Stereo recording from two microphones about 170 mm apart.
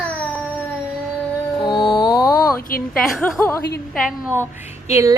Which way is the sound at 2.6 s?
60° left (ahead or behind).